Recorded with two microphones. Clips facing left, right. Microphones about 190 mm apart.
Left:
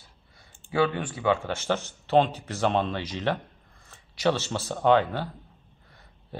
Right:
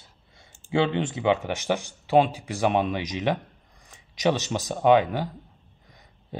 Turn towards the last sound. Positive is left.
turn(degrees=-15)  # may be behind; listen again after turning